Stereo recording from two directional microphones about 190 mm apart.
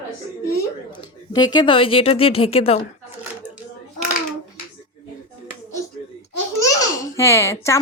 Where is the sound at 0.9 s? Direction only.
20° left (ahead or behind).